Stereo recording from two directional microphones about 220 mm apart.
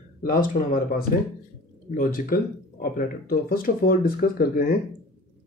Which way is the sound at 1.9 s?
40° left (ahead or behind).